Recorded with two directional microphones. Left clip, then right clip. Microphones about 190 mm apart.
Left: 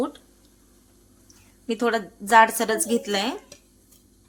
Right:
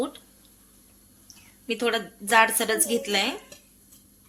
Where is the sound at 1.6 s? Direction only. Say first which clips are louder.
Left 2 dB; 25° left (ahead or behind).